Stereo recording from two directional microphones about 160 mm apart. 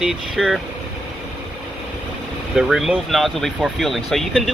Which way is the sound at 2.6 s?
5° right (ahead or behind).